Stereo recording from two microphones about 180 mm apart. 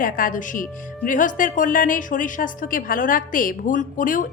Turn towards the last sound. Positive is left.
turn(degrees=50)  # may be behind; listen again after turning